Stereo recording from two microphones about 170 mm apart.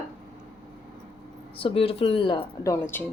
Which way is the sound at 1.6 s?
35° left (ahead or behind).